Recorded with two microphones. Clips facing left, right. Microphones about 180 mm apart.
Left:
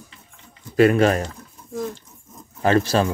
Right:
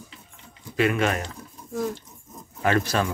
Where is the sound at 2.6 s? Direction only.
30° left (ahead or behind).